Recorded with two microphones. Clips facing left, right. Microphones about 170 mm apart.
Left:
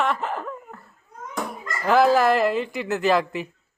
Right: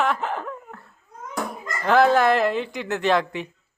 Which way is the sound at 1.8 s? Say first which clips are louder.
Even; centre (ahead or behind).